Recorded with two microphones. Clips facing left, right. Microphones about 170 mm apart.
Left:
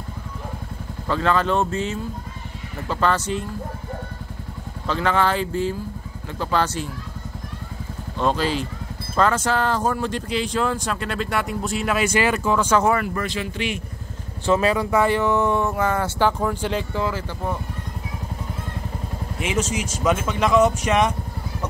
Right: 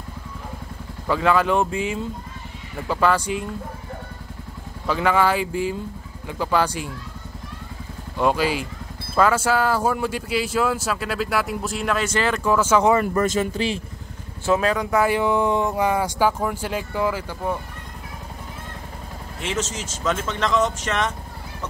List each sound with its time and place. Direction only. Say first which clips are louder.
1.0 s speech: right 1 dB; 10° right (ahead or behind)
4.8 s speech: right 1 dB; 10° right (ahead or behind)
8.2 s speech: right 1 dB; 10° right (ahead or behind); by 12.4 s 10° left (ahead or behind)
12.4 s speech: right 5 dB; 5° right (ahead or behind)
13.0 s speech: right 5 dB; 40° right (ahead or behind)
14.4 s speech: left 1 dB; centre (ahead or behind)
15.0 s speech: even; 10° right (ahead or behind)
19.4 s speech: left 3 dB; 10° left (ahead or behind)